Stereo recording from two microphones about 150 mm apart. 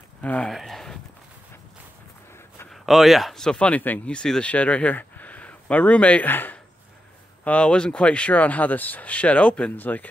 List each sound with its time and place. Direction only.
0.2 s speech: 10° left (ahead or behind)
2.7 s speech: centre (ahead or behind)